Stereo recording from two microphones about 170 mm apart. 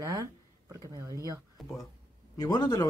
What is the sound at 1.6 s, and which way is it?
Speech, centre (ahead or behind).